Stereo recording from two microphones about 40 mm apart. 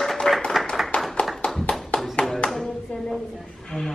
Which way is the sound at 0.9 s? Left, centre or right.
Left.